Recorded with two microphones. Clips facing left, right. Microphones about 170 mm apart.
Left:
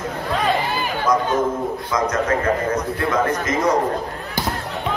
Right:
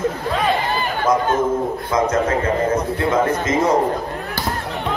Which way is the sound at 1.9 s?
25° right (ahead or behind).